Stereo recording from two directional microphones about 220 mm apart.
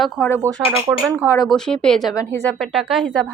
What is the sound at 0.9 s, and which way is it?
Speech, 15° right (ahead or behind).